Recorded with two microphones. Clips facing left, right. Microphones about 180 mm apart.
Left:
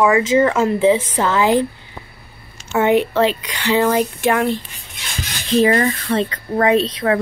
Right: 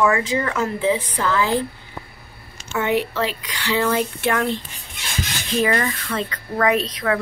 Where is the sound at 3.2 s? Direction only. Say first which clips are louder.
Left 7 dB; 25° left (ahead or behind).